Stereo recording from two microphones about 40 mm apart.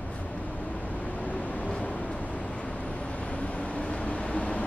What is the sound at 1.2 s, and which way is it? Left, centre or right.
Vehicle, left.